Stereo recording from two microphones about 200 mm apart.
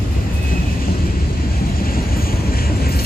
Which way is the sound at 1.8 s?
45° left (ahead or behind).